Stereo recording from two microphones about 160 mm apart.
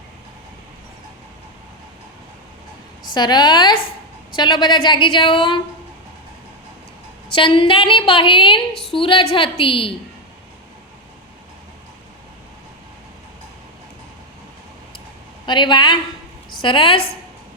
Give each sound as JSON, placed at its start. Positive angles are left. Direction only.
{"t": 3.2, "sound": "a woman's voice", "side_deg": 25}
{"t": 7.3, "sound": "a woman's voice", "side_deg": 30}
{"t": 15.4, "sound": "a woman's voice", "side_deg": 30}